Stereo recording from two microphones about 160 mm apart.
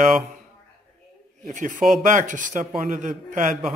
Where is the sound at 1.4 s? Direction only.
55° right (ahead or behind).